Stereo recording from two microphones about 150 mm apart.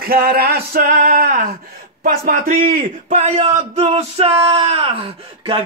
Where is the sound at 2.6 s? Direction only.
50° right (ahead or behind).